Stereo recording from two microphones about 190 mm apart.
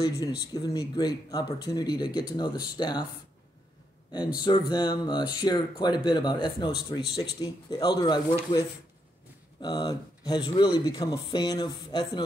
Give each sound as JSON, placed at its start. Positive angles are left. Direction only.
{"t": 0.5, "sound": "speech", "side_deg": 20}
{"t": 4.1, "sound": "speech", "side_deg": 20}